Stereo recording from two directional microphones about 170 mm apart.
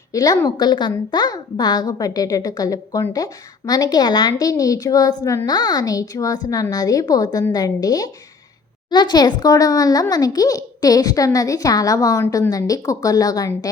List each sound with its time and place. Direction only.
0.1 s a child's voice: 20° left (ahead or behind)